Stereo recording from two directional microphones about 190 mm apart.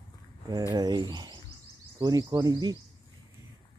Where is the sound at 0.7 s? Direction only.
20° right (ahead or behind).